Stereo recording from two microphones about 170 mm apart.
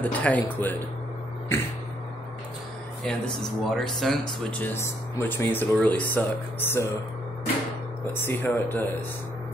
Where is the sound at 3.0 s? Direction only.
5° left (ahead or behind).